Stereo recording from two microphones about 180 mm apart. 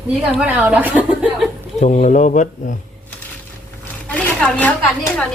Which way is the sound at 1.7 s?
40° left (ahead or behind).